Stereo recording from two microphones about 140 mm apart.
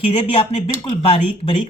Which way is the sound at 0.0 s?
45° left (ahead or behind).